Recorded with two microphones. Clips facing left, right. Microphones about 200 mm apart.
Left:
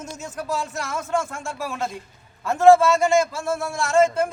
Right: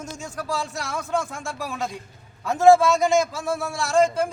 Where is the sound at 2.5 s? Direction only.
15° right (ahead or behind).